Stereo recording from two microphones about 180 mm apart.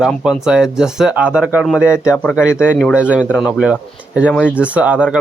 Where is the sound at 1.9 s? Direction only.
15° left (ahead or behind).